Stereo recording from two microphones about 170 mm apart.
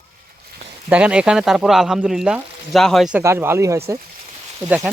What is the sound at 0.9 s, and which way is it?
Speech, 5° right (ahead or behind).